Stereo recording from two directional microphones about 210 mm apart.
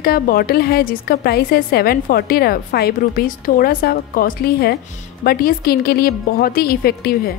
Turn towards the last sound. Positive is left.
turn(degrees=45)  # may be behind; listen again after turning